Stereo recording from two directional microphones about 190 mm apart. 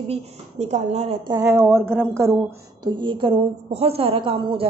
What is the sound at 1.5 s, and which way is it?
A woman's voice, 5° right (ahead or behind).